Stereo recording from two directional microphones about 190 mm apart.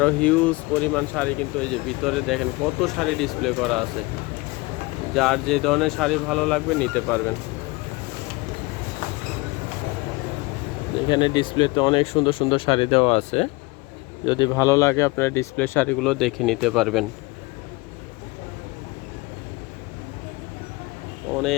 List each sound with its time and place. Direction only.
0.0 s speech: 5° left (ahead or behind)
5.1 s speech: centre (ahead or behind)
10.9 s speech: 25° left (ahead or behind)
14.3 s speech: 20° left (ahead or behind); by 17.1 s centre (ahead or behind)